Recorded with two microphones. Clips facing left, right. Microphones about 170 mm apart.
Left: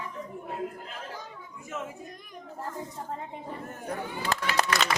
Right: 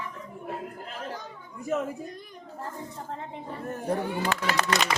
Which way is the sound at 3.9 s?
45° right (ahead or behind).